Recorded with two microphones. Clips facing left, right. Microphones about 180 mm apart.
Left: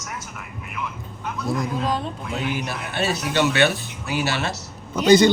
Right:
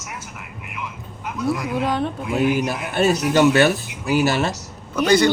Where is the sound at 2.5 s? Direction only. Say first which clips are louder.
Right 6 dB; 45° right (ahead or behind).